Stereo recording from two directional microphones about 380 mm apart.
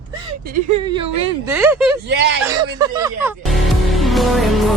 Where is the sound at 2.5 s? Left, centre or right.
Centre.